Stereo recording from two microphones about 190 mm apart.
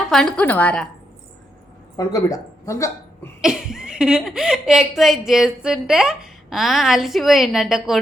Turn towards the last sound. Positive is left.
turn(degrees=0)  # may be behind; listen again after turning